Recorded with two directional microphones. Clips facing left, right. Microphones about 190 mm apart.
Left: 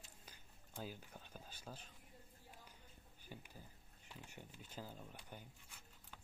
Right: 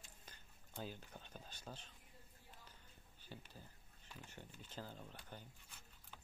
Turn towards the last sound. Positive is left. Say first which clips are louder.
# even
turn(degrees=10)  # may be behind; listen again after turning